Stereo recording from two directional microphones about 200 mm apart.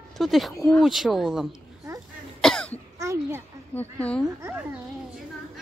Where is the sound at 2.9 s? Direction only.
15° right (ahead or behind).